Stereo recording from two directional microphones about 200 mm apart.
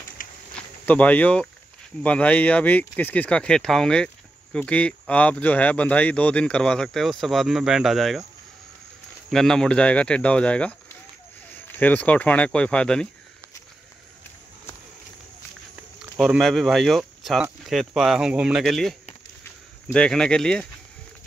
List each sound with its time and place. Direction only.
0.2 s insect: 40° left (ahead or behind)
0.8 s speech: 5° left (ahead or behind)
9.3 s speech: centre (ahead or behind)
16.2 s speech: centre (ahead or behind)